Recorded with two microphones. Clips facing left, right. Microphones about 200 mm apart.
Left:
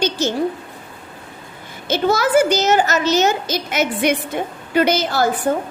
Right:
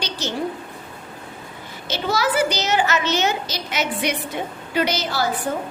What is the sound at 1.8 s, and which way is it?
A woman's voice, 50° left (ahead or behind).